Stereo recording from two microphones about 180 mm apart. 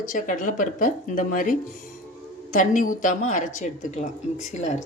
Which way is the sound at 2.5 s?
45° left (ahead or behind).